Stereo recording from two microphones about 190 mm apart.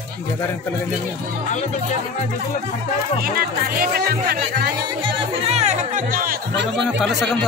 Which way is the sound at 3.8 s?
55° right (ahead or behind).